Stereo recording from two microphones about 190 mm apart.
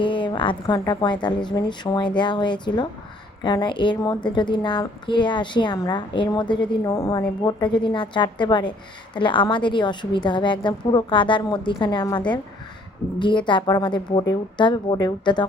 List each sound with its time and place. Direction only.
0.0 s a woman's voice: 25° left (ahead or behind)